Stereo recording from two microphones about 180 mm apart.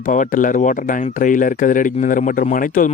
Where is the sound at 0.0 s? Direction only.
45° left (ahead or behind).